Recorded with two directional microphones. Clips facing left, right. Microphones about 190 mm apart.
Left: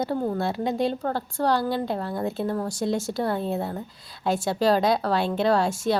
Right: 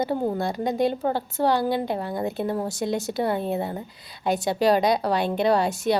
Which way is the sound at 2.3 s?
15° right (ahead or behind).